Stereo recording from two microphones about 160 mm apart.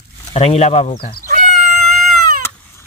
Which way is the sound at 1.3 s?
55° right (ahead or behind).